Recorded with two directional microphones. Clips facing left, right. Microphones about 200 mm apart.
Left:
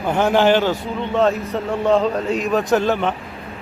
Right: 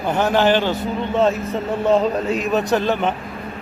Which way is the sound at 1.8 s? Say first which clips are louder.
Even; 5° right (ahead or behind).